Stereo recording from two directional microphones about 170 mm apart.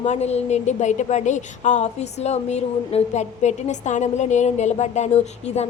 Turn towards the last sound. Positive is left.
turn(degrees=40)  # may be behind; listen again after turning